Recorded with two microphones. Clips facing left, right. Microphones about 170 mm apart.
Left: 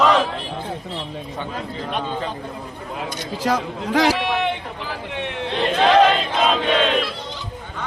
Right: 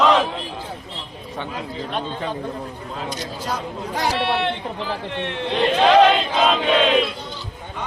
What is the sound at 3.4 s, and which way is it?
Speech, 90° left.